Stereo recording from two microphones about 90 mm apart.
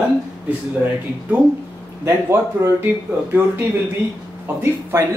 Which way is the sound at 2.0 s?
25° right (ahead or behind).